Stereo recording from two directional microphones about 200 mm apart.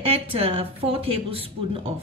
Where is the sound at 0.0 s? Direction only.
30° right (ahead or behind).